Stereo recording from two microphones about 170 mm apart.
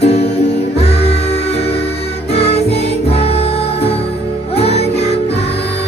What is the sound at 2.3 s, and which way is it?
Music, 35° left (ahead or behind).